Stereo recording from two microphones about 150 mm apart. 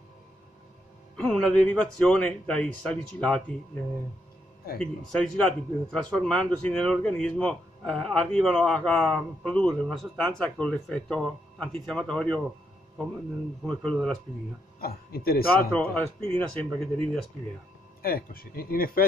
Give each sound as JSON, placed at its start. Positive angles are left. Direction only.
{"t": 1.2, "sound": "a man's voice", "side_deg": 5}
{"t": 4.7, "sound": "a man's voice", "side_deg": 5}
{"t": 13.8, "sound": "a man's voice", "side_deg": 5}
{"t": 14.8, "sound": "speech", "side_deg": 90}
{"t": 15.7, "sound": "a man's voice", "side_deg": 10}
{"t": 18.0, "sound": "speech", "side_deg": 80}